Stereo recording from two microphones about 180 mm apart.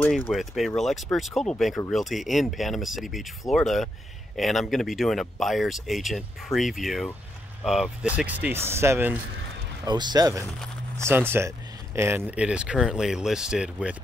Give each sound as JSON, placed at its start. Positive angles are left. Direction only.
{"t": 0.2, "sound": "speech", "side_deg": 0}